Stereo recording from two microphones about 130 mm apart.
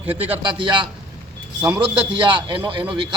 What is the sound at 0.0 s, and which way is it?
Speech, 10° right (ahead or behind).